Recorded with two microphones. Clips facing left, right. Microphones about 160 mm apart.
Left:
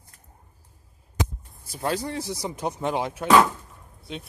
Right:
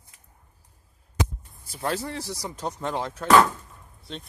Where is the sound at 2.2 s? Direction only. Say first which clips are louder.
Left 3 dB; 20° left (ahead or behind).